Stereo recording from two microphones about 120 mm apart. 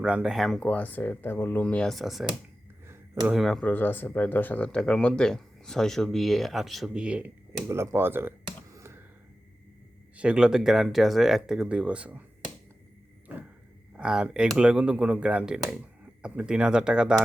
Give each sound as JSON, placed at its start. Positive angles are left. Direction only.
{"t": 0.0, "sound": "speech", "side_deg": -10}
{"t": 1.6, "sound": "speech", "side_deg": 5}
{"t": 3.3, "sound": "speech", "side_deg": 5}
{"t": 3.7, "sound": "speech", "side_deg": 15}
{"t": 7.7, "sound": "speech", "side_deg": -20}
{"t": 8.7, "sound": "computer keyboard", "side_deg": -20}
{"t": 10.2, "sound": "speech", "side_deg": -10}
{"t": 13.9, "sound": "speech", "side_deg": -5}